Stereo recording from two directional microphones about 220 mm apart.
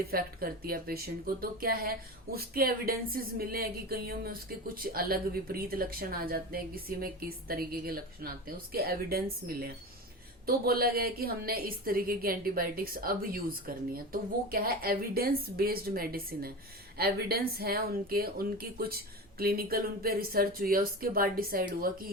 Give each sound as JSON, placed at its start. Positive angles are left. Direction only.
{"t": 0.1, "sound": "speech", "side_deg": -40}